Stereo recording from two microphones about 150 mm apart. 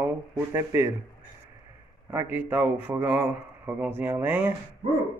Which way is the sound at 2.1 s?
15° right (ahead or behind).